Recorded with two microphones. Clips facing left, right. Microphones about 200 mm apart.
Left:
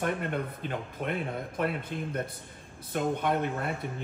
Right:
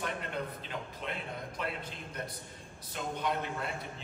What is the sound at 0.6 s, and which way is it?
Speech, 55° left (ahead or behind).